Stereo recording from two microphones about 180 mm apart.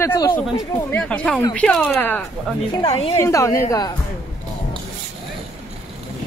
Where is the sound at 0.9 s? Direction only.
5° left (ahead or behind).